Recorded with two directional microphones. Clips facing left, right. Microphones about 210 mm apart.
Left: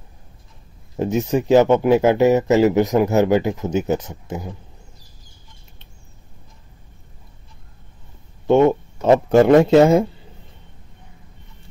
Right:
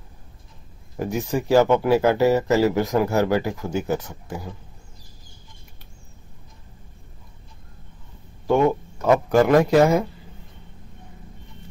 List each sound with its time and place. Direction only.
0.9 s speech: 20° left (ahead or behind)
8.5 s speech: 25° left (ahead or behind)